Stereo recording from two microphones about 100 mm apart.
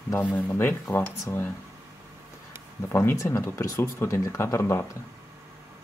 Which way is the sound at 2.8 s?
25° left (ahead or behind).